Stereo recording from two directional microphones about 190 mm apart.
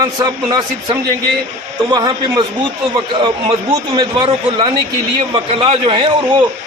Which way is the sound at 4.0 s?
25° right (ahead or behind).